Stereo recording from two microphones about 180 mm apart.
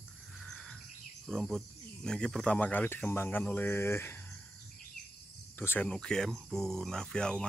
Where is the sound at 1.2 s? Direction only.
Centre (ahead or behind).